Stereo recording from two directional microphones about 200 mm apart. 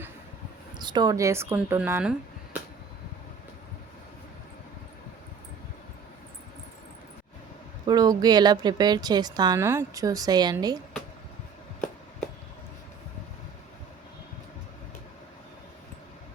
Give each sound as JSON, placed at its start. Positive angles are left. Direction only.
{"t": 0.8, "sound": "speech", "side_deg": -20}
{"t": 7.9, "sound": "a woman's voice", "side_deg": -20}